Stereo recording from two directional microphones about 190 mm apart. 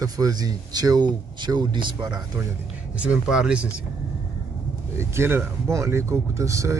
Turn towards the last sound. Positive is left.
turn(degrees=-15)  # may be behind; listen again after turning